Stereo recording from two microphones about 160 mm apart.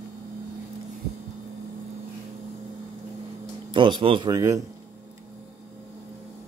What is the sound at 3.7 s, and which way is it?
Speech, 30° right (ahead or behind).